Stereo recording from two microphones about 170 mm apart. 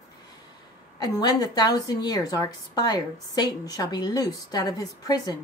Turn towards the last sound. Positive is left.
turn(degrees=20)  # may be behind; listen again after turning